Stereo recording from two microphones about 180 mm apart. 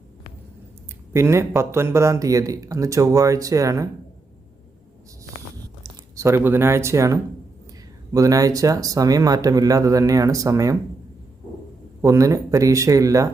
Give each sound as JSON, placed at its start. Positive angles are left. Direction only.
{"t": 1.1, "sound": "speech", "side_deg": -15}
{"t": 6.1, "sound": "speech", "side_deg": -15}
{"t": 12.0, "sound": "speech", "side_deg": -15}